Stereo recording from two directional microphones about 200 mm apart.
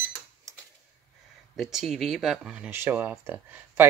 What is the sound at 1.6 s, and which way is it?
Speech, centre (ahead or behind).